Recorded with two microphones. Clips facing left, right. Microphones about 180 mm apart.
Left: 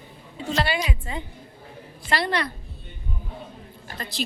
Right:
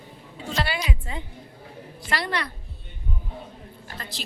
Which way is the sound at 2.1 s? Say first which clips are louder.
Left 3 dB; 25° left (ahead or behind).